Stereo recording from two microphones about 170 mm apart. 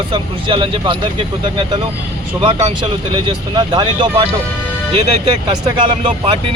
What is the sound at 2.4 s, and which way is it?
Speech, 30° right (ahead or behind).